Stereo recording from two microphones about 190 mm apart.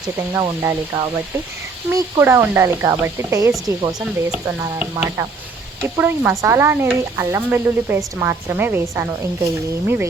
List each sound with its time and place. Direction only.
0.3 s speech: 15° right (ahead or behind)